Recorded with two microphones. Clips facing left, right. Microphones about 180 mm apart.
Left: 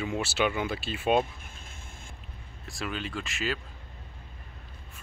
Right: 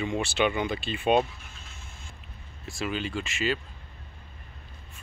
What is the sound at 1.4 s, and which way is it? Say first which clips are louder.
Vehicle: left 1 dB; 50° left (ahead or behind).